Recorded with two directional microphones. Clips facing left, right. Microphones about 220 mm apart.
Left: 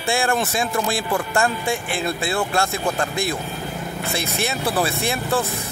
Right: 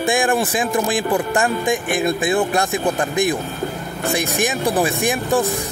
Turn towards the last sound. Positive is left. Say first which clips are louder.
# right 4 dB
turn(degrees=-15)  # may be behind; listen again after turning